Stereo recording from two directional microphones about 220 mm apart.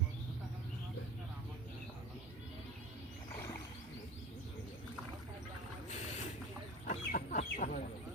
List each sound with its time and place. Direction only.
6.8 s chicken: 35° left (ahead or behind)